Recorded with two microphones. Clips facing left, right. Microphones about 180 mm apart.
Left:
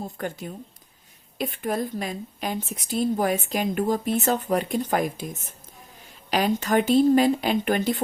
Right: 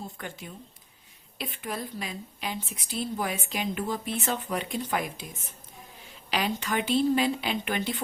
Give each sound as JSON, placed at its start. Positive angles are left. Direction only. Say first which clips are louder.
{"t": 0.0, "sound": "a woman's voice", "louder": "left 8 dB", "side_deg": 45}